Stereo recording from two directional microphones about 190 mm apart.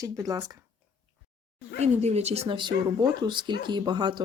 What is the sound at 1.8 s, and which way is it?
Speech, 35° right (ahead or behind).